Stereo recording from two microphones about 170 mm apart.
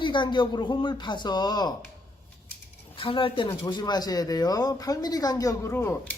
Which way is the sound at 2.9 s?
30° left (ahead or behind).